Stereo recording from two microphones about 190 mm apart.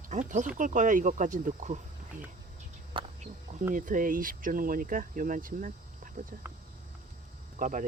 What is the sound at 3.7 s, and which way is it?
Speech, 45° right (ahead or behind).